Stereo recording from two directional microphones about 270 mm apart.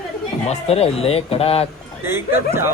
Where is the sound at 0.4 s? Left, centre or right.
Left.